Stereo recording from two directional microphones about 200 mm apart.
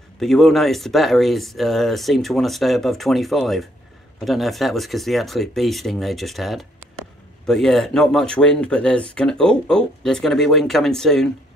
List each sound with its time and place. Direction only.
0.2 s speech: centre (ahead or behind)